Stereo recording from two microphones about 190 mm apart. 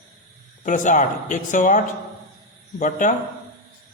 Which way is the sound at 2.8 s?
40° left (ahead or behind).